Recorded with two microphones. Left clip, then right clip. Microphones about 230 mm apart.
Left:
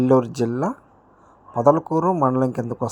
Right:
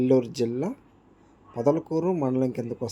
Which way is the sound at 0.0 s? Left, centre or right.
Centre.